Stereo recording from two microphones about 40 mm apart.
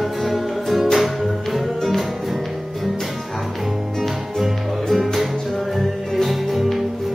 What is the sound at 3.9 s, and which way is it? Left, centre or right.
Music, centre.